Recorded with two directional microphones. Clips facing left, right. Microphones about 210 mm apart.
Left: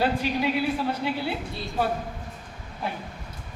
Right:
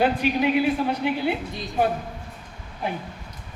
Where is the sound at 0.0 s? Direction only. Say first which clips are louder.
Right 3 dB; 15° right (ahead or behind).